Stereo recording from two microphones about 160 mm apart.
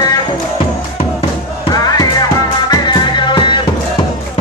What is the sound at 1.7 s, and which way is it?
Music, 25° left (ahead or behind).